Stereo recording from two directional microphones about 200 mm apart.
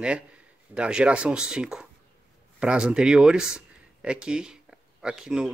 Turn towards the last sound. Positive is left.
turn(degrees=-5)  # may be behind; listen again after turning